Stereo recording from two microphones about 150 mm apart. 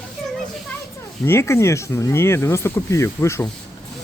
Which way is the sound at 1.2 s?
20° left (ahead or behind).